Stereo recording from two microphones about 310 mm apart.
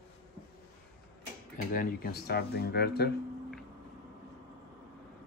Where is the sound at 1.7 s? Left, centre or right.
Left.